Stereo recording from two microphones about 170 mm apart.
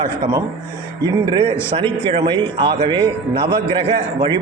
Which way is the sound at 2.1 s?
30° right (ahead or behind).